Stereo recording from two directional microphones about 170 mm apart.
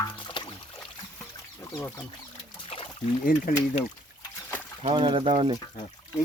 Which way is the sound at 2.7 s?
35° left (ahead or behind).